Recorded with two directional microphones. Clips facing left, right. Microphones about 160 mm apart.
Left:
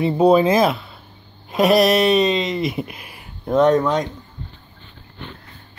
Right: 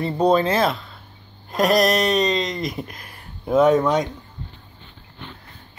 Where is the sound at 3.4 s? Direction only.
5° right (ahead or behind).